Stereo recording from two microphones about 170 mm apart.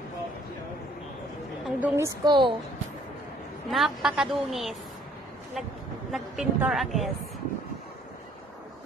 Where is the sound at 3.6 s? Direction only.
Centre (ahead or behind).